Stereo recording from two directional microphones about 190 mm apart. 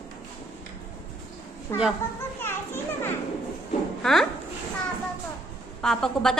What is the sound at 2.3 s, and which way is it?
Children playing, 10° left (ahead or behind).